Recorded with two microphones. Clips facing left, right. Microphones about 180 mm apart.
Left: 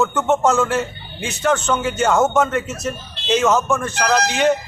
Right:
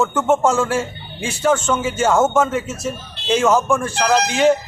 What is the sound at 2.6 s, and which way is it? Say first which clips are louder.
Speech: even; 25° right (ahead or behind).